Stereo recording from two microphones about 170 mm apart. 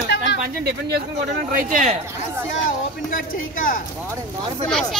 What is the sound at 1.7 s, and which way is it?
Speech, 50° right (ahead or behind).